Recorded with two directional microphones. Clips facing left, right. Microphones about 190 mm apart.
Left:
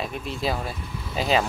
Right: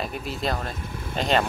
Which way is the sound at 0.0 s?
Centre (ahead or behind).